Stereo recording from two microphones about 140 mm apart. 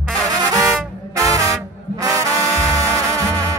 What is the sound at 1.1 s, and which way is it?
Music, 25° right (ahead or behind).